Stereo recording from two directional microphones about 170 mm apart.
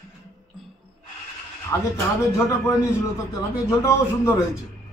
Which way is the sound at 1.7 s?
20° left (ahead or behind).